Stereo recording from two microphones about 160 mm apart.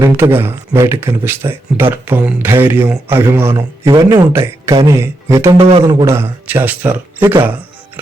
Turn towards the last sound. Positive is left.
turn(degrees=-10)  # may be behind; listen again after turning